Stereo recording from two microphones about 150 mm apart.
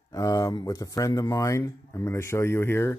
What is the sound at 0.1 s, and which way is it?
Speech, 25° left (ahead or behind).